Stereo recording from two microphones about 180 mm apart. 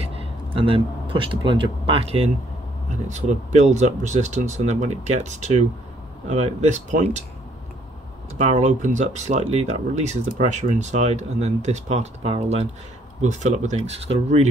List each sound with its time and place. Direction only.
0.0 s speech: 30° right (ahead or behind)
8.4 s speech: 40° right (ahead or behind)